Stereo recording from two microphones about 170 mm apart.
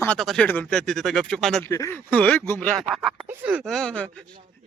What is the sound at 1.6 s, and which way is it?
Speech, 15° left (ahead or behind).